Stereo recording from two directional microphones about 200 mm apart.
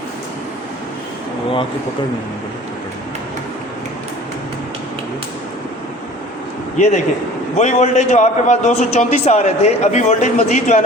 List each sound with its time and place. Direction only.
6.7 s a man's voice: 35° left (ahead or behind)